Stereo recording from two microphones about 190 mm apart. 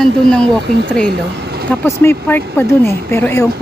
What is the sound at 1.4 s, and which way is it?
Vehicle, 55° right (ahead or behind).